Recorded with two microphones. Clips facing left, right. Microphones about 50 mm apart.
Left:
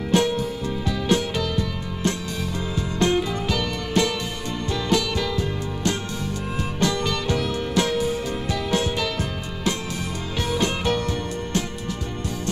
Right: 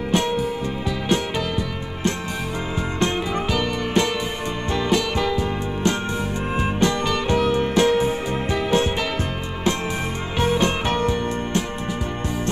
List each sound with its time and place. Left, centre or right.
0.1 s music: centre
3.1 s music: right
10.4 s music: right